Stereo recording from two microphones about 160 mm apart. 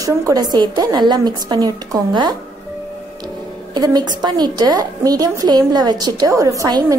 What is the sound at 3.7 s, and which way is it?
A woman's voice, 25° right (ahead or behind).